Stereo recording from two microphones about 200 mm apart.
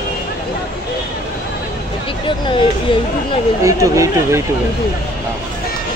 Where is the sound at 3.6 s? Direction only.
15° right (ahead or behind).